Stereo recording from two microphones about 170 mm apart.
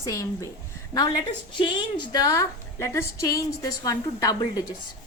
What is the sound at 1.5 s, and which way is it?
A woman's voice, 25° left (ahead or behind).